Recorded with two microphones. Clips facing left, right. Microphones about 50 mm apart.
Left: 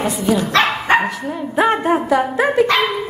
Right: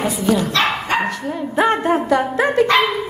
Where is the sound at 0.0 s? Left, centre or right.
Centre.